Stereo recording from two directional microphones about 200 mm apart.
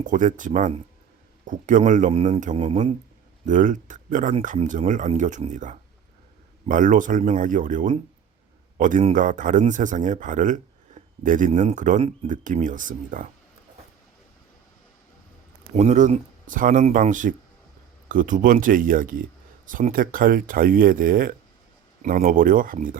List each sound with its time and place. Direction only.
0.0 s speech: 40° right (ahead or behind)
3.4 s speech: 40° right (ahead or behind)
15.7 s speech: 35° right (ahead or behind)